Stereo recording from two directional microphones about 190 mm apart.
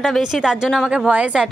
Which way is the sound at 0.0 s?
Centre (ahead or behind).